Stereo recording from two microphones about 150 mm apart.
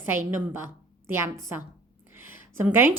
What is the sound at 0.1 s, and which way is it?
A woman's voice, 15° right (ahead or behind).